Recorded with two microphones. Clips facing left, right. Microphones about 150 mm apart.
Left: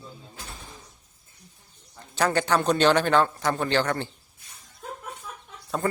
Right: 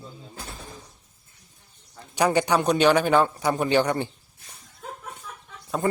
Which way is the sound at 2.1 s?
15° right (ahead or behind).